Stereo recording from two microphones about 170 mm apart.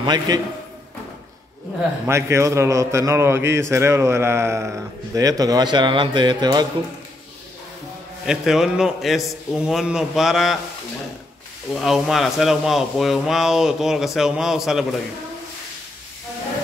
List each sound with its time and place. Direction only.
0.0 s a man's voice: 25° right (ahead or behind)
2.0 s a man's voice: 15° right (ahead or behind)
8.3 s speech: 5° right (ahead or behind)
11.7 s speech: centre (ahead or behind)